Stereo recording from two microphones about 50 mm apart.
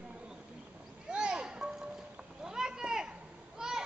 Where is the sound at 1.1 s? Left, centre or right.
Centre.